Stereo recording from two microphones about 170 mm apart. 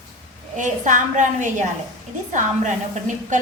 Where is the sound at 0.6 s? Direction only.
45° right (ahead or behind).